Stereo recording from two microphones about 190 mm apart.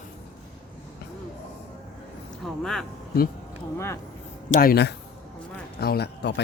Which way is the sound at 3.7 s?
15° left (ahead or behind).